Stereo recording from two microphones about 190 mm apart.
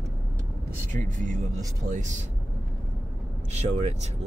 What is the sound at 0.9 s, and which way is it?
Speech, 40° right (ahead or behind).